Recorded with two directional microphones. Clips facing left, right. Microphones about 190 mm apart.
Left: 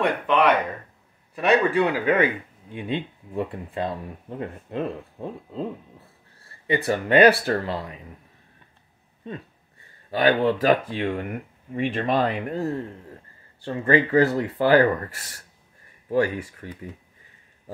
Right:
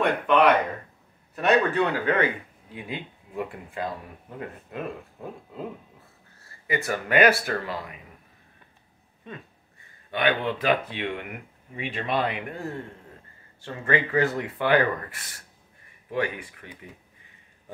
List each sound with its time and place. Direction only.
0.0 s speech: 5° right (ahead or behind)
1.3 s speech: 5° left (ahead or behind)
2.7 s speech: 30° left (ahead or behind)
6.7 s speech: 30° left (ahead or behind)
9.3 s speech: 35° left (ahead or behind)